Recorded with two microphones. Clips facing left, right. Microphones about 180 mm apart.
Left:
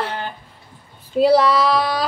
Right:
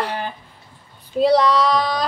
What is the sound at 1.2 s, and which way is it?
Speech, 5° left (ahead or behind).